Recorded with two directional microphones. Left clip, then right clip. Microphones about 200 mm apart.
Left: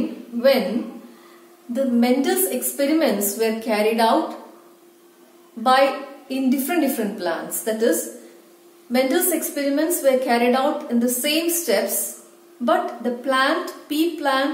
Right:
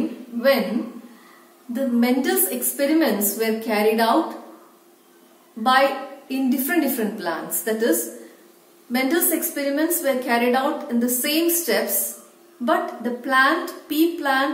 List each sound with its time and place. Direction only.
1.7 s a woman's voice: 15° left (ahead or behind)
5.6 s a woman's voice: 15° left (ahead or behind)
8.9 s a woman's voice: 15° left (ahead or behind)